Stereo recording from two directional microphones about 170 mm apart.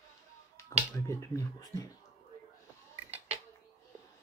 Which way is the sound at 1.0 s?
15° left (ahead or behind).